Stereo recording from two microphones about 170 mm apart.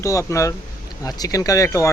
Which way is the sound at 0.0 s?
15° left (ahead or behind).